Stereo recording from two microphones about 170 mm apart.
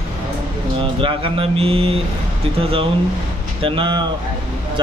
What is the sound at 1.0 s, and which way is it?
A man's voice, 30° right (ahead or behind).